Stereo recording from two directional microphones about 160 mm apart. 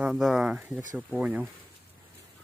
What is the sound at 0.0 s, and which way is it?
Speech, 5° right (ahead or behind).